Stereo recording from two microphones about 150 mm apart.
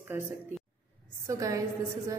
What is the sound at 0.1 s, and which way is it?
A woman's voice, 15° right (ahead or behind).